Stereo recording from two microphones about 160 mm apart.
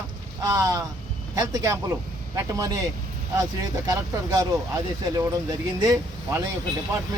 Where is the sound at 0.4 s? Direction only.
20° right (ahead or behind).